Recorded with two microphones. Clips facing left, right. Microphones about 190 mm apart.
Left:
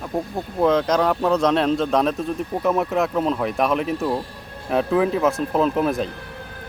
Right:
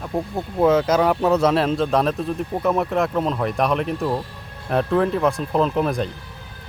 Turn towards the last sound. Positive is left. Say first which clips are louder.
# left 1 dB
turn(degrees=0)  # may be behind; listen again after turning